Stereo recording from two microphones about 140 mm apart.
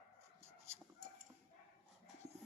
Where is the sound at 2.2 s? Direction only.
50° right (ahead or behind).